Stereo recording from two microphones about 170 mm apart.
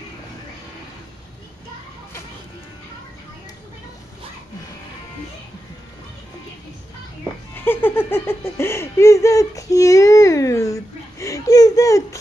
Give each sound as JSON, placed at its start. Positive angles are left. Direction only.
{"t": 7.5, "sound": "laughter", "side_deg": 10}
{"t": 8.1, "sound": "speech", "side_deg": 15}